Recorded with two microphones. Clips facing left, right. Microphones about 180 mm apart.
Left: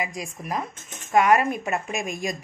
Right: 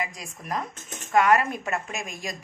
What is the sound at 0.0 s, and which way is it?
A woman's voice, 10° left (ahead or behind).